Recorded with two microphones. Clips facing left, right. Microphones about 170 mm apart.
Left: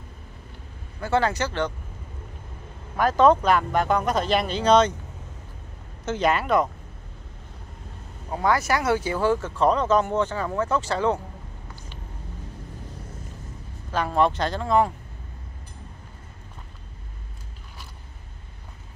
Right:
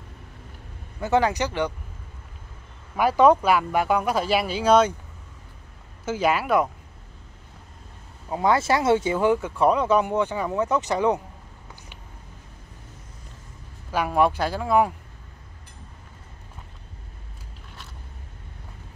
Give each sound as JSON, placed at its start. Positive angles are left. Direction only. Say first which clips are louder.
{"t": 1.0, "sound": "speech", "louder": "right 2 dB", "side_deg": -15}
{"t": 3.0, "sound": "speech", "louder": "right 1 dB", "side_deg": -10}
{"t": 6.0, "sound": "speech", "louder": "even", "side_deg": -5}
{"t": 8.3, "sound": "speech", "louder": "right 2 dB", "side_deg": -20}
{"t": 13.9, "sound": "speech", "louder": "right 1 dB", "side_deg": -10}